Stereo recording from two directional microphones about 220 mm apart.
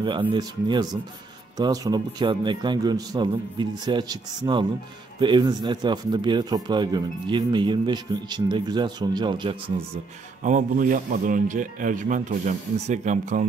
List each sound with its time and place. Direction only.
0.3 s speech: 20° right (ahead or behind)
10.4 s speech: 35° right (ahead or behind)